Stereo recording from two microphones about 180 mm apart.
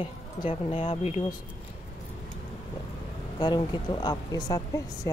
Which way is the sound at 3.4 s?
25° left (ahead or behind).